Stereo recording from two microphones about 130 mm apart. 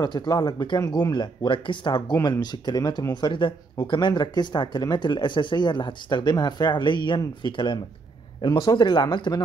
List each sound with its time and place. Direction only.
0.0 s speech: 35° left (ahead or behind)